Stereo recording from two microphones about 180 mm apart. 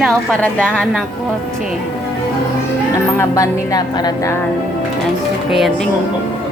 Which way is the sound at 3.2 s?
20° left (ahead or behind).